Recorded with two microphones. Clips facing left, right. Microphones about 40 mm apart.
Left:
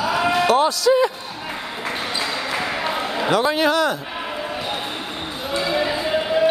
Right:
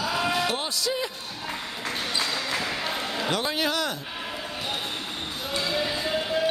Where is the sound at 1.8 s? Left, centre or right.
Centre.